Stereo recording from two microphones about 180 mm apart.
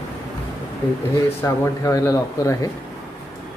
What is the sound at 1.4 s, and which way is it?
Speech, 15° left (ahead or behind).